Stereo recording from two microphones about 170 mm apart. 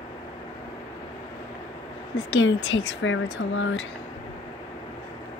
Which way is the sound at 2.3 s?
90° left.